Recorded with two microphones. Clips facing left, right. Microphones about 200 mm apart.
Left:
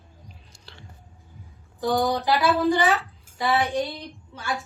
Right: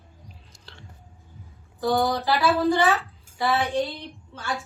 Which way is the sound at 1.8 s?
15° left (ahead or behind).